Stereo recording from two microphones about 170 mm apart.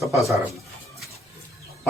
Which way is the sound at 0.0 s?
Centre (ahead or behind).